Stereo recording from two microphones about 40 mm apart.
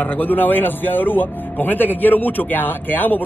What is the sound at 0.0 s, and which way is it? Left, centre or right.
Speech, left.